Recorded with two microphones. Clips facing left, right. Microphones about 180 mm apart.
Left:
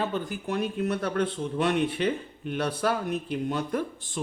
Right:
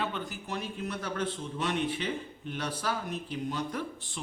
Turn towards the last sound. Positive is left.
turn(degrees=50)  # may be behind; listen again after turning